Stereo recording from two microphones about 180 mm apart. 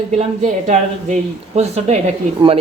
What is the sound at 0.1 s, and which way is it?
Speech, 40° right (ahead or behind).